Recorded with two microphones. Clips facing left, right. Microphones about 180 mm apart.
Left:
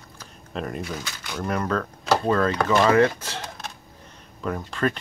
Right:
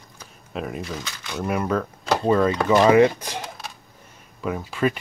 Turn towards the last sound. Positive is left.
turn(degrees=-10)  # may be behind; listen again after turning